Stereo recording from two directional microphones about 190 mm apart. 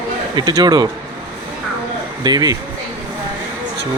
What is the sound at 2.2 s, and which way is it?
Speech, 20° right (ahead or behind).